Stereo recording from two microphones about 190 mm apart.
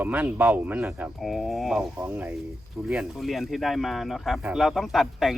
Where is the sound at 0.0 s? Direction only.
10° right (ahead or behind).